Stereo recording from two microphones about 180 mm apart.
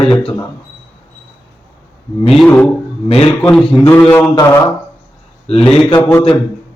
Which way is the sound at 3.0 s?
35° left (ahead or behind).